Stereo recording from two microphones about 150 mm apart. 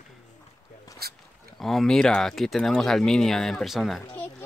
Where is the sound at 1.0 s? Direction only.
90° right.